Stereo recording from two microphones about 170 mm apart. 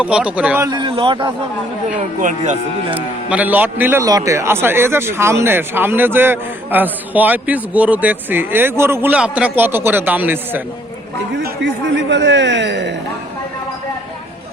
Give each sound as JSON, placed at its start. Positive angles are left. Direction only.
{"t": 0.0, "sound": "a man's voice", "side_deg": -5}
{"t": 0.7, "sound": "a man's voice", "side_deg": -30}
{"t": 1.9, "sound": "speech", "side_deg": -45}
{"t": 2.9, "sound": "a man's voice", "side_deg": -10}
{"t": 11.3, "sound": "a man's voice", "side_deg": -90}